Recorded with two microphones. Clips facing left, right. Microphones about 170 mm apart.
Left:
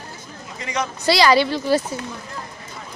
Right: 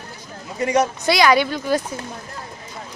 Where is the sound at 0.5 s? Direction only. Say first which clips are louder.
Right 8 dB; 40° right (ahead or behind).